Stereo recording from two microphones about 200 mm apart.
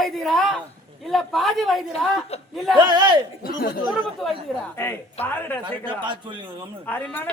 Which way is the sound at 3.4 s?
50° left (ahead or behind).